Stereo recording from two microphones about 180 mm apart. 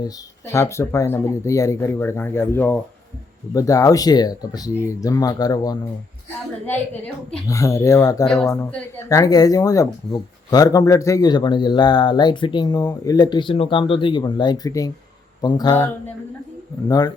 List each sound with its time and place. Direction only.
0.0 s speech: 15° left (ahead or behind)
7.4 s speech: 15° left (ahead or behind)